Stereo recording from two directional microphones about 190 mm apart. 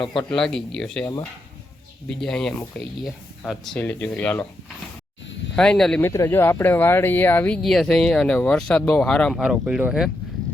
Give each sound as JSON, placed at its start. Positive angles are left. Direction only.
{"t": 0.0, "sound": "speech", "side_deg": 25}
{"t": 0.3, "sound": "speech", "side_deg": 5}
{"t": 5.5, "sound": "speech", "side_deg": 5}